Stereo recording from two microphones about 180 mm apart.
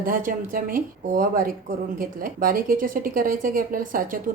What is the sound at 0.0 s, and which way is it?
A woman's voice, 50° right (ahead or behind).